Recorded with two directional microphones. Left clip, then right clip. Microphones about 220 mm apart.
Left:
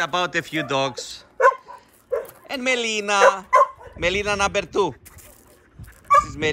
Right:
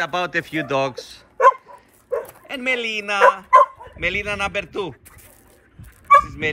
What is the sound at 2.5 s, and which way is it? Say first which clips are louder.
Speech: even; 5° left (ahead or behind).